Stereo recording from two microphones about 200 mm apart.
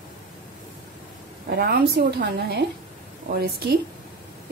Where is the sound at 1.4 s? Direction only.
50° right (ahead or behind).